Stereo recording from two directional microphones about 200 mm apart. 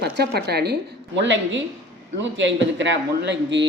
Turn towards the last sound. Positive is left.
turn(degrees=-60)  # may be behind; listen again after turning